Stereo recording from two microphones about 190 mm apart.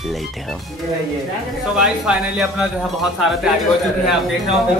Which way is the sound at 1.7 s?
5° right (ahead or behind).